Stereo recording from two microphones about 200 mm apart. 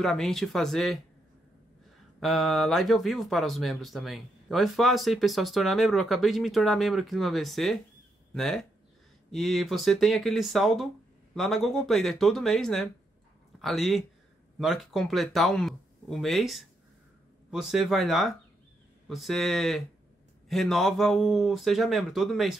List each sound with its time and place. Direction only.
0.0 s speech: centre (ahead or behind)
2.1 s speech: centre (ahead or behind)